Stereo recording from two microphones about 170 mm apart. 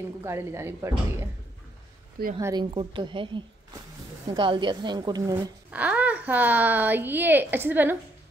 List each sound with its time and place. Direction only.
0.2 s a woman's voice: 15° right (ahead or behind)
2.3 s a woman's voice: 25° right (ahead or behind)
5.7 s a woman's voice: 10° right (ahead or behind)